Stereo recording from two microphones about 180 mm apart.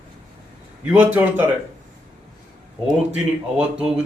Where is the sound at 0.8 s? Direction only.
10° right (ahead or behind).